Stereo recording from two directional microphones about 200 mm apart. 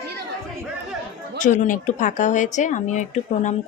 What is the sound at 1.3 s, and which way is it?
Speech, 40° left (ahead or behind).